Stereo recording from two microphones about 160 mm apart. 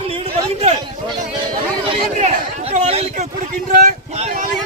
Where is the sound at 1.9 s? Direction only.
35° right (ahead or behind).